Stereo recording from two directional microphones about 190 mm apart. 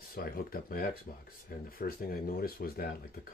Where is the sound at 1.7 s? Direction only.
50° left (ahead or behind).